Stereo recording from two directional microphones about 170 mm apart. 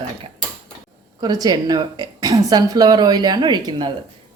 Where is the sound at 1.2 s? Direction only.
25° right (ahead or behind).